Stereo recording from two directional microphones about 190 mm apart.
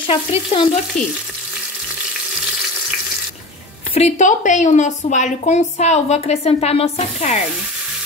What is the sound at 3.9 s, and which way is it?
A woman's voice, 40° left (ahead or behind).